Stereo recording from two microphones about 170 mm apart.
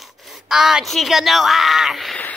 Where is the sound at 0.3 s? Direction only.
Centre (ahead or behind).